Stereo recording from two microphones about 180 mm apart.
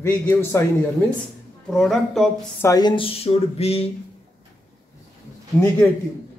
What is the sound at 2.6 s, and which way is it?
Speech, 20° left (ahead or behind).